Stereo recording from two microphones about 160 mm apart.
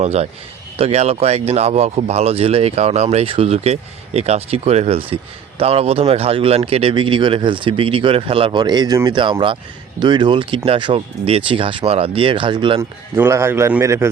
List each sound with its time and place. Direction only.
0.0 s a man's voice: 40° right (ahead or behind)
13.1 s a man's voice: 15° right (ahead or behind)